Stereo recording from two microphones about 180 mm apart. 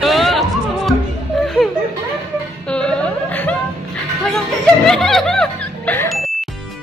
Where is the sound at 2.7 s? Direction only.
5° left (ahead or behind).